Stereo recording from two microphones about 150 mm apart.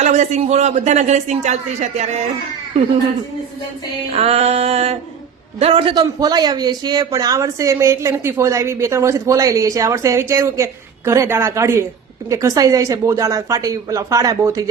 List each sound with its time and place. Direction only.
0.0 s speech: 50° right (ahead or behind)
4.1 s a man's voice: 45° right (ahead or behind); by 14.6 s 20° right (ahead or behind)